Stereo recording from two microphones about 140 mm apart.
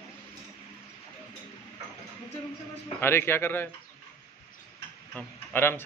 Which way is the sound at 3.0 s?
15° left (ahead or behind).